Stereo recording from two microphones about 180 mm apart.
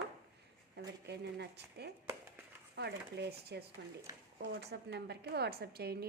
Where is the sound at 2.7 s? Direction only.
65° right (ahead or behind).